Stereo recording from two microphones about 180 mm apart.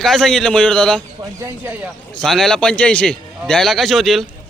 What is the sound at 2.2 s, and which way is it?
Speech, 5° left (ahead or behind).